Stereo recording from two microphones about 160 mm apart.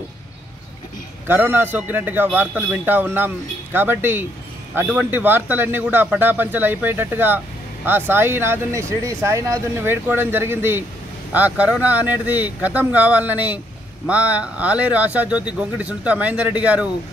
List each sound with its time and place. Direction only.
1.2 s a man's voice: 10° right (ahead or behind)